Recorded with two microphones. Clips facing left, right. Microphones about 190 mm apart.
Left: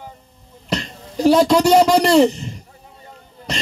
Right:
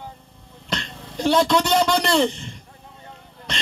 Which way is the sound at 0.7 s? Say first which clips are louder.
Left 5 dB; 5° left (ahead or behind).